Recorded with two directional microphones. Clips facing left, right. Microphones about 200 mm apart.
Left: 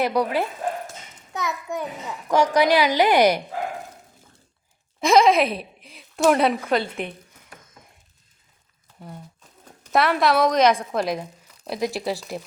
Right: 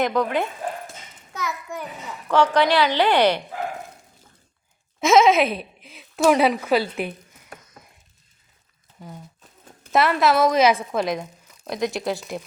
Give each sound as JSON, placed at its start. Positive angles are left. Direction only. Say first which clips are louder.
{"t": 0.0, "sound": "a child's voice", "louder": "even", "side_deg": 5}
{"t": 4.9, "sound": "speech", "louder": "right 1 dB", "side_deg": 0}
{"t": 9.0, "sound": "a sound", "louder": "even", "side_deg": 0}
{"t": 9.9, "sound": "speech", "louder": "right 1 dB", "side_deg": 0}